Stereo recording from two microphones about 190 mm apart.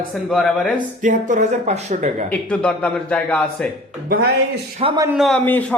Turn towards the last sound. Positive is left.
turn(degrees=0)  # may be behind; listen again after turning